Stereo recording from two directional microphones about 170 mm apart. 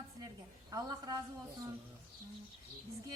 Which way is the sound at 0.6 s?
25° right (ahead or behind).